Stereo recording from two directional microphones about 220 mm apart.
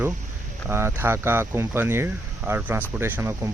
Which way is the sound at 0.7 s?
10° right (ahead or behind).